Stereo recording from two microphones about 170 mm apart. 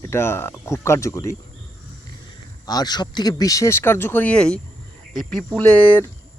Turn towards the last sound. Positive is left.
turn(degrees=10)  # may be behind; listen again after turning